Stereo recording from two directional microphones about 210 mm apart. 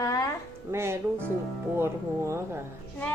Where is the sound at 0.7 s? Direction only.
10° right (ahead or behind).